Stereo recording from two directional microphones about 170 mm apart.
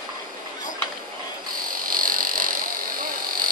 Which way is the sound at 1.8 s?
55° right (ahead or behind).